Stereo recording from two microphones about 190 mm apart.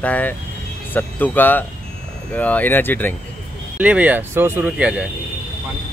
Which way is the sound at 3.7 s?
5° right (ahead or behind).